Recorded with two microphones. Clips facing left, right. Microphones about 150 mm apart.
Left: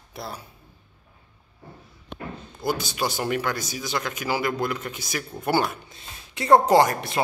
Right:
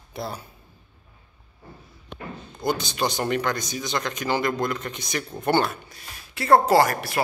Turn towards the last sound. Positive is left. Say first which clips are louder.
# left 1 dB
turn(degrees=20)  # may be behind; listen again after turning